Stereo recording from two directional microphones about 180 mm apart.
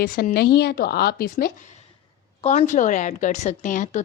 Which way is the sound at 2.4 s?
40° left (ahead or behind).